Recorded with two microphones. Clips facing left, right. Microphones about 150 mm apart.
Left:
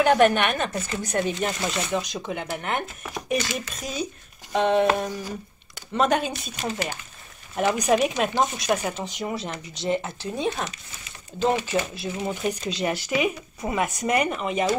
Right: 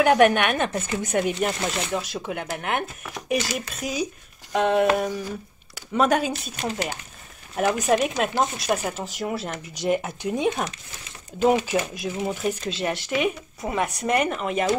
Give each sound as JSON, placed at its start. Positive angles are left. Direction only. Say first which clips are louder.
{"t": 0.0, "sound": "speech", "louder": "right 1 dB", "side_deg": -10}
{"t": 0.8, "sound": "speech", "louder": "right 2 dB", "side_deg": -15}
{"t": 1.4, "sound": "speech", "louder": "right 1 dB", "side_deg": 0}
{"t": 7.5, "sound": "speech", "louder": "even", "side_deg": 0}